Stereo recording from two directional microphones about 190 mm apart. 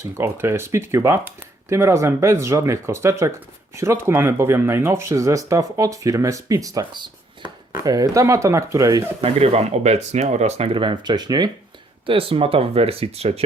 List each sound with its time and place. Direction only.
0.2 s speech: 15° right (ahead or behind)
9.2 s speech: 35° right (ahead or behind)